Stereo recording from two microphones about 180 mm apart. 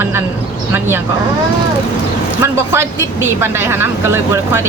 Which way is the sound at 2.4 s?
15° right (ahead or behind).